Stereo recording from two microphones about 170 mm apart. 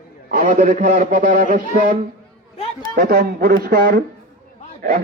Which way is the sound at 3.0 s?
60° right (ahead or behind).